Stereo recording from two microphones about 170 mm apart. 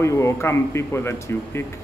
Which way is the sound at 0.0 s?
15° left (ahead or behind).